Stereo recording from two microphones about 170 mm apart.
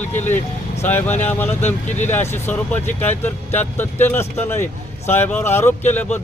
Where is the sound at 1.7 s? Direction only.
45° left (ahead or behind).